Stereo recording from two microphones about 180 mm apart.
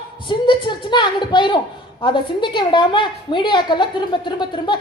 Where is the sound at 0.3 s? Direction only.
25° left (ahead or behind).